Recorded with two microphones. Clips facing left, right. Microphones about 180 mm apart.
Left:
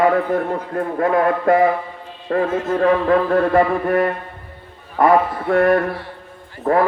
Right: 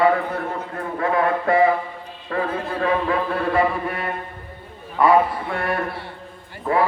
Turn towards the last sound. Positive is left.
turn(degrees=45)  # may be behind; listen again after turning